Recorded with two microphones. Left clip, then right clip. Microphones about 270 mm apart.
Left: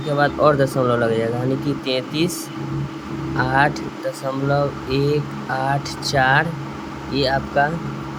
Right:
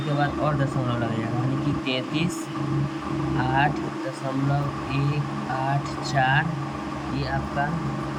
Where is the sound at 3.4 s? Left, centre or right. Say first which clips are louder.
Left 6 dB; centre.